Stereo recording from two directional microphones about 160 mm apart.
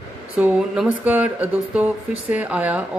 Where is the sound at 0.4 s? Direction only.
10° right (ahead or behind).